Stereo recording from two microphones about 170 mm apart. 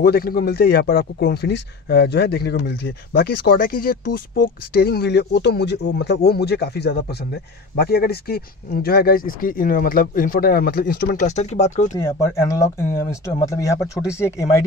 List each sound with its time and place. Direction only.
0.0 s a man's voice: 65° left (ahead or behind)
4.7 s a man's voice: 65° left (ahead or behind)
11.2 s speech: 40° left (ahead or behind)
11.9 s speech: 20° left (ahead or behind)